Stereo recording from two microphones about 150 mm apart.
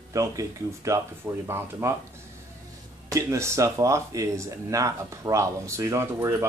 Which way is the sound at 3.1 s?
20° right (ahead or behind).